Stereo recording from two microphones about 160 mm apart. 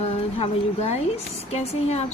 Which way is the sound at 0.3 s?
40° left (ahead or behind).